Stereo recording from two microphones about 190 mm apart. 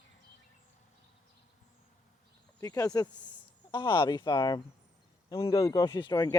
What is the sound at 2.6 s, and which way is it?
Speech, 20° left (ahead or behind).